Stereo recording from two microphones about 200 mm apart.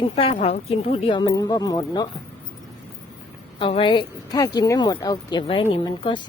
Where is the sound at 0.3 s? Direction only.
30° left (ahead or behind).